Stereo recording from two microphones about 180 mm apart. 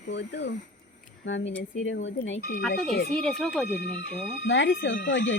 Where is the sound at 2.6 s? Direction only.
5° left (ahead or behind).